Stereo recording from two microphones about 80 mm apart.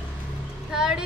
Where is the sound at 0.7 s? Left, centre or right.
Centre.